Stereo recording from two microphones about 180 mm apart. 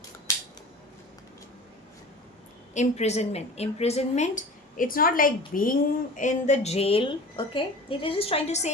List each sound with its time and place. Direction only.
2.7 s speech: 35° left (ahead or behind)